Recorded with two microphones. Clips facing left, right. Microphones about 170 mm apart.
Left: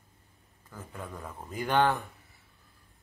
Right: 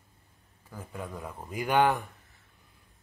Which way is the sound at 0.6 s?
10° right (ahead or behind).